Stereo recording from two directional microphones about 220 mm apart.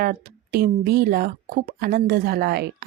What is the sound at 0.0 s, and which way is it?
A woman's voice, 40° right (ahead or behind).